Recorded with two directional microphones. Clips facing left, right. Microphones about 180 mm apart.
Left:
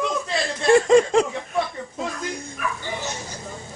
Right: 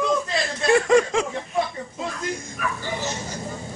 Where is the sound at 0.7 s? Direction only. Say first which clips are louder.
Left 3 dB; 25° left (ahead or behind).